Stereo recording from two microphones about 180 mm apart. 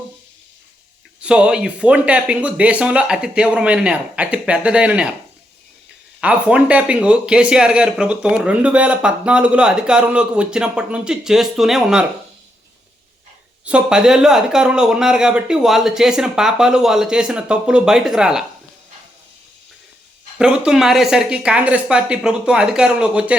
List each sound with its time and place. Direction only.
1.2 s speech: 5° right (ahead or behind)
6.1 s speech: 5° right (ahead or behind)
13.7 s speech: 5° right (ahead or behind)
20.4 s speech: 5° right (ahead or behind)